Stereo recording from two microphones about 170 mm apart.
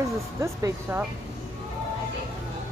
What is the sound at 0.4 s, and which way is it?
Speech, 15° right (ahead or behind).